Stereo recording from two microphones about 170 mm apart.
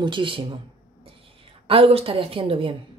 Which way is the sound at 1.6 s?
35° right (ahead or behind).